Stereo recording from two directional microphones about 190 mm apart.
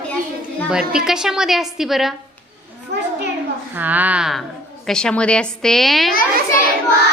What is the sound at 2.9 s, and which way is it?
Children playing, 60° right (ahead or behind).